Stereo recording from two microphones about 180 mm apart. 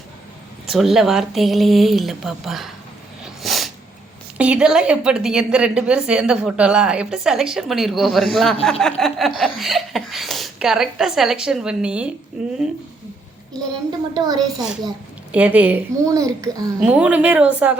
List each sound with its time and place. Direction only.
0.7 s a woman's voice: centre (ahead or behind)
3.4 s sneeze: centre (ahead or behind)
4.4 s a woman's voice: 5° right (ahead or behind)
14.1 s a woman's voice: 20° right (ahead or behind)
14.4 s a woman's voice: 5° right (ahead or behind); by 16.7 s 20° right (ahead or behind)
16.8 s a child's voice: 5° right (ahead or behind)